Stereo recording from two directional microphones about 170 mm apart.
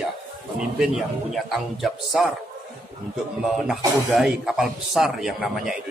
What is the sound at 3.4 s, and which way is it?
A man's voice, centre (ahead or behind).